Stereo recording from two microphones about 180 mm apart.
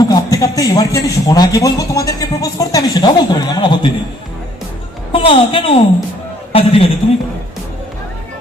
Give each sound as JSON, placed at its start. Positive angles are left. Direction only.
{"t": 0.0, "sound": "a man's voice", "side_deg": 20}
{"t": 5.1, "sound": "a woman's voice", "side_deg": 30}